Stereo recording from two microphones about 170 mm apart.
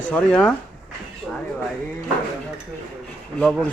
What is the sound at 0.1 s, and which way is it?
Speech, 5° left (ahead or behind).